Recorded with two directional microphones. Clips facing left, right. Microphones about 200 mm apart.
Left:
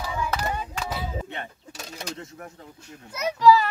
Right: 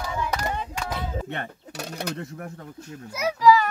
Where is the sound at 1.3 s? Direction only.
65° right (ahead or behind).